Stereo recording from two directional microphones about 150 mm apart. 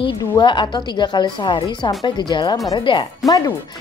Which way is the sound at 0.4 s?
30° left (ahead or behind).